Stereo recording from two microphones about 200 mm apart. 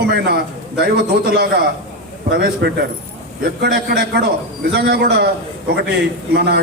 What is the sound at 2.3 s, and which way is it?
A man's voice, 50° right (ahead or behind).